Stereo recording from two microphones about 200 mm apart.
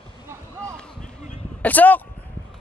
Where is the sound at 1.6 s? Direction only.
10° left (ahead or behind).